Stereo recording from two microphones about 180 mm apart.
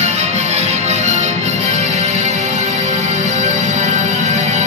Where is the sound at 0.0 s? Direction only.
40° right (ahead or behind).